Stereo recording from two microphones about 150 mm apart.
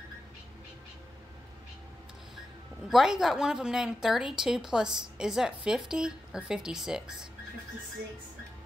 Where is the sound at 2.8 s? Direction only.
5° right (ahead or behind).